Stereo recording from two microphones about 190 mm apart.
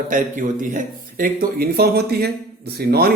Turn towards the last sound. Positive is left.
turn(degrees=-55)  # may be behind; listen again after turning